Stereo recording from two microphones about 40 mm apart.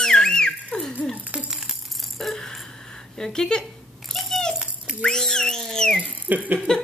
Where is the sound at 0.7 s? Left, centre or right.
Left.